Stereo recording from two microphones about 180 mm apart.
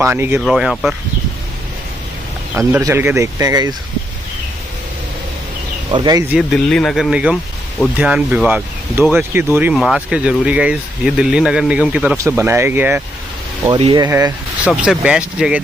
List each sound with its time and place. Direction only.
0.0 s speech: 10° right (ahead or behind)
0.4 s speech: centre (ahead or behind)
2.8 s speech: 10° right (ahead or behind)
5.9 s speech: 25° right (ahead or behind)
6.2 s speech: centre (ahead or behind); by 14.3 s 20° right (ahead or behind)
14.6 s speech: 5° right (ahead or behind)